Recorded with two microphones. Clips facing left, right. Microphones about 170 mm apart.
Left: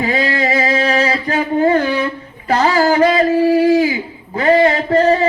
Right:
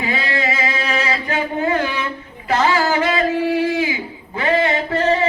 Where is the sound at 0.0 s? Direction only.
40° left (ahead or behind).